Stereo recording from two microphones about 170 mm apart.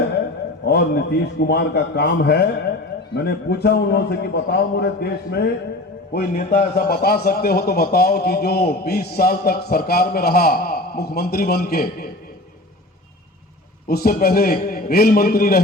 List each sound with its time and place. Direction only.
0.6 s a man's voice: 70° left (ahead or behind)
13.8 s a man's voice: 60° left (ahead or behind)